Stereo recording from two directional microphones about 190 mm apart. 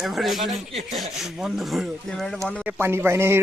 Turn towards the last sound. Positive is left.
turn(degrees=-15)  # may be behind; listen again after turning